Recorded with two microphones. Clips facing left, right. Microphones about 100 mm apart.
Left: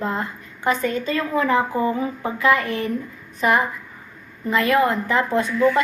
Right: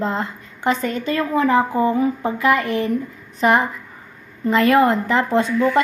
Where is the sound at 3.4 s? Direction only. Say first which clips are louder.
Right 3 dB; 30° right (ahead or behind).